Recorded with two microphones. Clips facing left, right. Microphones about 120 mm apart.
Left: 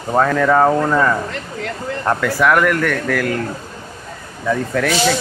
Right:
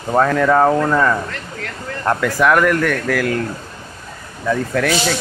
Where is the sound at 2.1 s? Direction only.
15° right (ahead or behind).